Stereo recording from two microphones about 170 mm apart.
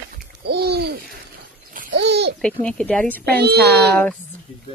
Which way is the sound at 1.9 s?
85° right.